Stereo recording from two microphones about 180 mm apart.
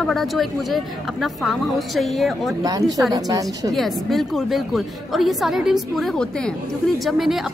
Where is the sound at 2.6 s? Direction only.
20° right (ahead or behind).